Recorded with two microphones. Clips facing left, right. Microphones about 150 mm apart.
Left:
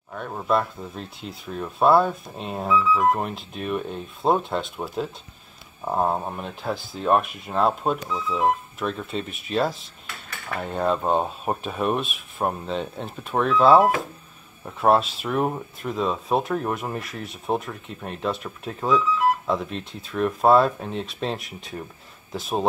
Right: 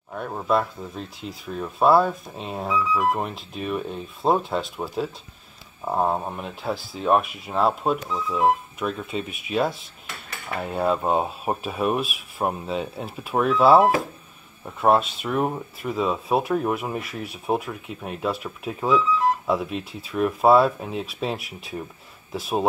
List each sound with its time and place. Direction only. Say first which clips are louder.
0.1 s speech: right 1 dB; 10° right (ahead or behind)